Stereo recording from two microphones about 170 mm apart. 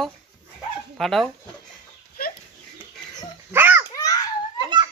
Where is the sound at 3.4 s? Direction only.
10° right (ahead or behind).